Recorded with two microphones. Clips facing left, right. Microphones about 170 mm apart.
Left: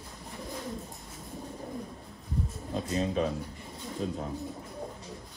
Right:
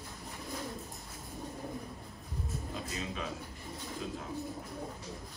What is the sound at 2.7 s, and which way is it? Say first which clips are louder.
A man's voice: left 13 dB; 40° left (ahead or behind).